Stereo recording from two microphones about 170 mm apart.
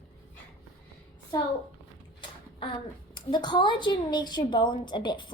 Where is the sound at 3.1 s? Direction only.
25° left (ahead or behind).